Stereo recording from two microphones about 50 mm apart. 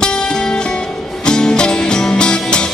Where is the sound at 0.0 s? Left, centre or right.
Centre.